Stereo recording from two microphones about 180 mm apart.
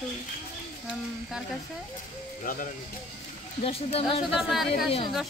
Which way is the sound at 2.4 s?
50° left (ahead or behind).